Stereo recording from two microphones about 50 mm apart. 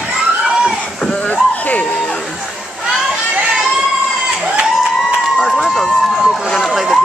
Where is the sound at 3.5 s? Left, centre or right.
Centre.